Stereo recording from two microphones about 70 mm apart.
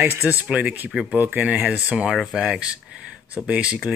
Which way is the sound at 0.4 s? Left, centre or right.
Centre.